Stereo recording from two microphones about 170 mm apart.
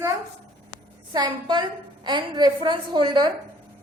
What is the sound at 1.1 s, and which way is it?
A woman's voice, 25° right (ahead or behind).